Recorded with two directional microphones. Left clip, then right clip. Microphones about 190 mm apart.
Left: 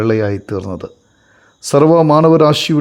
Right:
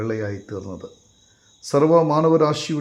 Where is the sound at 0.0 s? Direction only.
40° left (ahead or behind).